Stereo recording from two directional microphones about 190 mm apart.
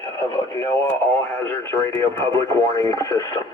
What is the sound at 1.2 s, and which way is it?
Speech, 15° left (ahead or behind).